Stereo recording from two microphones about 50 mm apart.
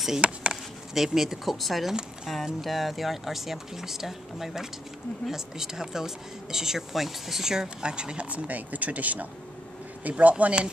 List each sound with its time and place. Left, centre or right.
0.2 s chop: right
0.9 s speech: centre